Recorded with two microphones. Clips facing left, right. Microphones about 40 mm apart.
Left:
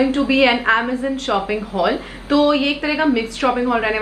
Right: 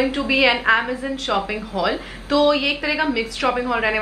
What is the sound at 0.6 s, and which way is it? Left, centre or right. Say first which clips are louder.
Speech: left 1 dB; centre.